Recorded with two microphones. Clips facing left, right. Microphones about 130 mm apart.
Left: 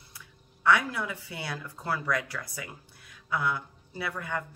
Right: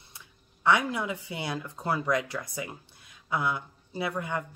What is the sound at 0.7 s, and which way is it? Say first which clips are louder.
Speech: even; 20° right (ahead or behind).